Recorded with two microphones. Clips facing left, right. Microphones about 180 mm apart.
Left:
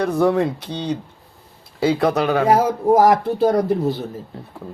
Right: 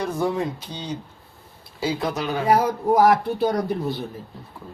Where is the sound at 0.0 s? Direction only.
65° left (ahead or behind).